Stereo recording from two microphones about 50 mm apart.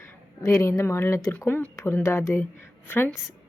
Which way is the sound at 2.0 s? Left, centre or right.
Left.